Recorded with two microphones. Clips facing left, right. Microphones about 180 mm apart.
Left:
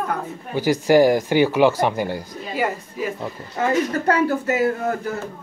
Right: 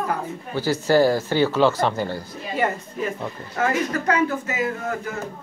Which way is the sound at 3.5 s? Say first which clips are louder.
Left 2 dB; 15° left (ahead or behind).